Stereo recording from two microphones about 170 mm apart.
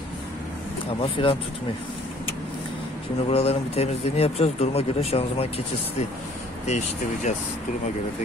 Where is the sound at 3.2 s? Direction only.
35° left (ahead or behind).